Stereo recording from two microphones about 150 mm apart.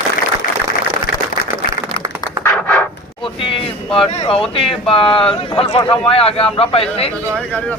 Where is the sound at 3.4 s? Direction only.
35° left (ahead or behind).